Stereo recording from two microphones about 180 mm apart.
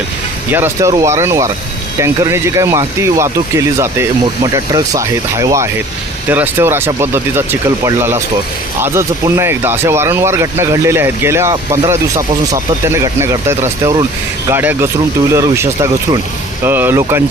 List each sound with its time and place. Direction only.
0.5 s speech: 15° right (ahead or behind)